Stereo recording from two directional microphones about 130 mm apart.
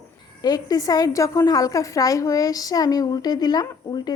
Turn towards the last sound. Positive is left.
turn(degrees=30)  # may be behind; listen again after turning